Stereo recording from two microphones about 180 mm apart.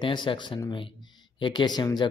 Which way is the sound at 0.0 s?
25° left (ahead or behind).